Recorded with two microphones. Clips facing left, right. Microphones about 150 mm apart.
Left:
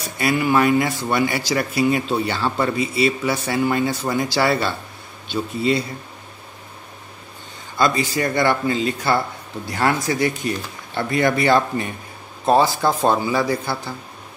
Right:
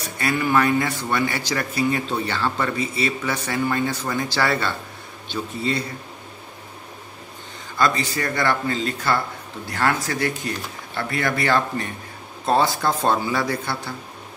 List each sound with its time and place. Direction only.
0.2 s a man's voice: 15° left (ahead or behind)
7.7 s a man's voice: 15° left (ahead or behind)